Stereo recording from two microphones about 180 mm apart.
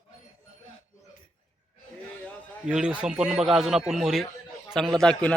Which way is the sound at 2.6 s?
5° right (ahead or behind).